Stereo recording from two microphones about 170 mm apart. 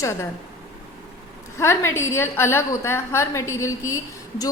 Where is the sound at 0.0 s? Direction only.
15° left (ahead or behind).